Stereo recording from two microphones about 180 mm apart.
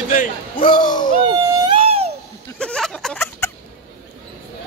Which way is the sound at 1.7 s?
30° right (ahead or behind).